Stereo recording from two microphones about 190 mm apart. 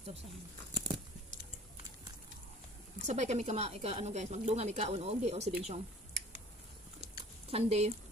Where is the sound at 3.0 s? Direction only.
40° right (ahead or behind).